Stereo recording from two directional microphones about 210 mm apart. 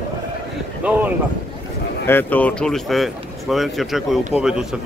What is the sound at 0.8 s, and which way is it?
Vehicle, 5° right (ahead or behind).